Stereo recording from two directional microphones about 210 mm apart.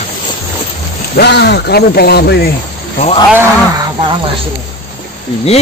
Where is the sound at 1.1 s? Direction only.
50° left (ahead or behind).